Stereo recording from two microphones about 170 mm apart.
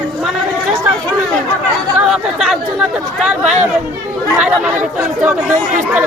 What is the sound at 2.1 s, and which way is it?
Speech, centre (ahead or behind).